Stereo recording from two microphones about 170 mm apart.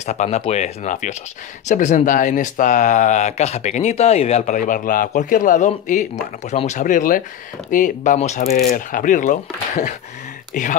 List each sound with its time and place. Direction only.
0.0 s speech: 40° left (ahead or behind)